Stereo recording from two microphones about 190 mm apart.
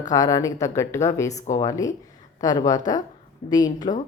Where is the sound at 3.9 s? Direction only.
30° left (ahead or behind).